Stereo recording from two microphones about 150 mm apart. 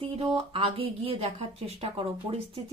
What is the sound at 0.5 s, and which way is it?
A woman's voice, 40° right (ahead or behind).